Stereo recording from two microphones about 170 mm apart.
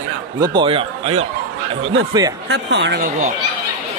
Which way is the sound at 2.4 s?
90° right.